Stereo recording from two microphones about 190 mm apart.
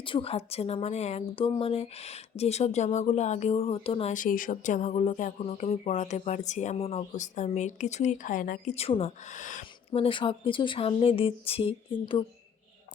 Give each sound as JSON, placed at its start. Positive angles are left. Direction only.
{"t": 0.0, "sound": "speech", "side_deg": 30}
{"t": 10.0, "sound": "speech", "side_deg": 25}